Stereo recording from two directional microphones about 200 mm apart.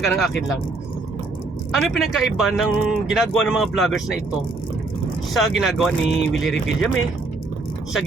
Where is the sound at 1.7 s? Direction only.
Centre (ahead or behind).